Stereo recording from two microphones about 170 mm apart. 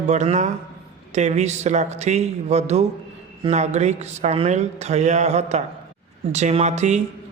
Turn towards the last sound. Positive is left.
turn(degrees=-40)  # may be behind; listen again after turning